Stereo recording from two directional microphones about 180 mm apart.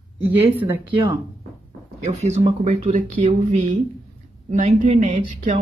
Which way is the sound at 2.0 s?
40° right (ahead or behind).